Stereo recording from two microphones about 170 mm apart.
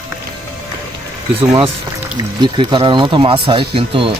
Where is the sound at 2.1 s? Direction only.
25° right (ahead or behind).